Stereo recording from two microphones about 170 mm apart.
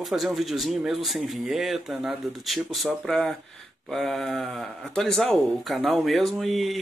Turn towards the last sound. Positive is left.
turn(degrees=0)  # may be behind; listen again after turning